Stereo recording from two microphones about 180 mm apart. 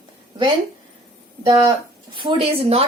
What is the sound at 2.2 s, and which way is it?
Speech, 30° right (ahead or behind).